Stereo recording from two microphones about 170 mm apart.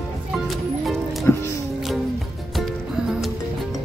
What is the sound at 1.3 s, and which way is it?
Music, 15° left (ahead or behind).